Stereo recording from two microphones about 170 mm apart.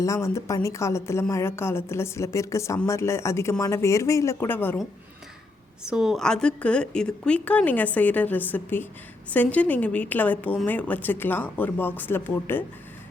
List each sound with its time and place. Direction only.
0.0 s a woman's voice: 20° left (ahead or behind)
5.8 s a woman's voice: 5° right (ahead or behind); by 12.6 s 10° left (ahead or behind)